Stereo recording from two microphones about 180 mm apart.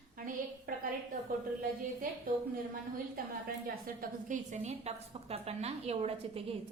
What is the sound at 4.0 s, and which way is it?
A woman's voice, 45° right (ahead or behind).